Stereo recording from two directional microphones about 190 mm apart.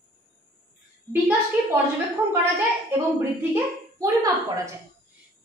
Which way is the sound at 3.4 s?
15° right (ahead or behind).